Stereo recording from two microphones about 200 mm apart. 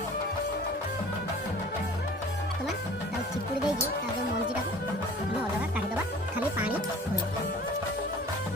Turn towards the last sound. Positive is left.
turn(degrees=-5)  # may be behind; listen again after turning